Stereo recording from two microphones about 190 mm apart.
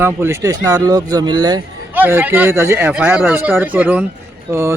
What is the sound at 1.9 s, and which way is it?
A man's voice, 10° right (ahead or behind).